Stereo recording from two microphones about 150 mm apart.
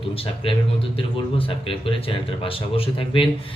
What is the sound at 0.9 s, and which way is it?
Speech, 35° left (ahead or behind).